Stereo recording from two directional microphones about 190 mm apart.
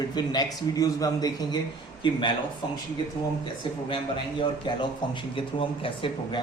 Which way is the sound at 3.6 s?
25° left (ahead or behind).